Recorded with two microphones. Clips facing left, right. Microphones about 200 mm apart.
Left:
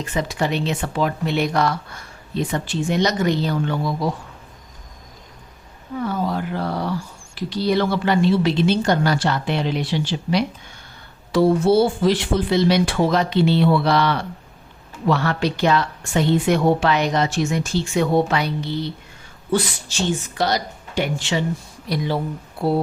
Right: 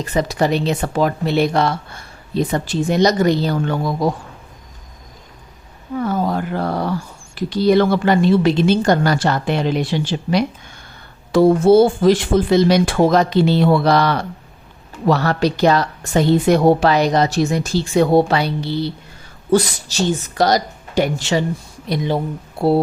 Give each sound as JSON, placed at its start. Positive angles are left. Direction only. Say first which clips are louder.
{"t": 0.0, "sound": "speech", "louder": "right 5 dB", "side_deg": -40}
{"t": 6.0, "sound": "a sound", "louder": "right 4 dB", "side_deg": -45}
{"t": 7.3, "sound": "a woman's voice", "louder": "right 6 dB", "side_deg": -50}
{"t": 21.8, "sound": "speech", "louder": "right 3 dB", "side_deg": -20}